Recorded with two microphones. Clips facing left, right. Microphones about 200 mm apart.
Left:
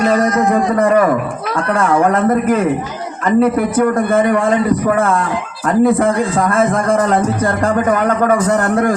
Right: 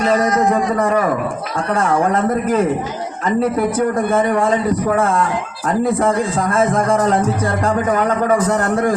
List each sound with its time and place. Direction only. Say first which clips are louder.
0.0 s a man's voice: left 2 dB; 55° left (ahead or behind)
5.6 s a man's voice: left 4 dB; 55° left (ahead or behind)